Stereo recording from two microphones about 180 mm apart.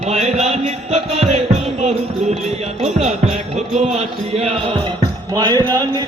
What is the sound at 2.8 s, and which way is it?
Music, 40° right (ahead or behind).